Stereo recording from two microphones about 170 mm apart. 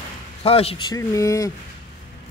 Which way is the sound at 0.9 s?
20° left (ahead or behind).